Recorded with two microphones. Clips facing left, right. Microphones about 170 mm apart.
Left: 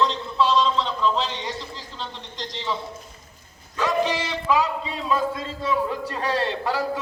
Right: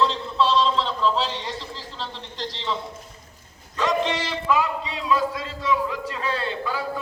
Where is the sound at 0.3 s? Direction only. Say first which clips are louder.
Even; centre (ahead or behind).